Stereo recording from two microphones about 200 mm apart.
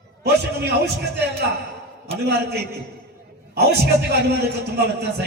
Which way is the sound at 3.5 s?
55° right (ahead or behind).